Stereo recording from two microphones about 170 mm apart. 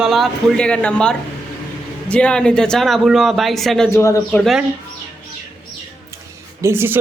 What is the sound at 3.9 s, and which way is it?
Speech, 15° left (ahead or behind).